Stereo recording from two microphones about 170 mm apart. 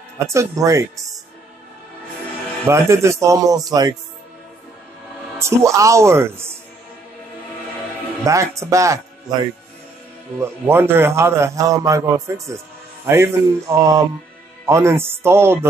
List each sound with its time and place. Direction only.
0.3 s a man's voice: 20° right (ahead or behind)
2.7 s a man's voice: 15° right (ahead or behind)
5.4 s a man's voice: 15° right (ahead or behind)
8.2 s speech: 20° right (ahead or behind)
10.4 s a man's voice: 15° right (ahead or behind)